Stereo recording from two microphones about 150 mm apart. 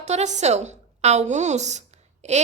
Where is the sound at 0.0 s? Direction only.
50° right (ahead or behind).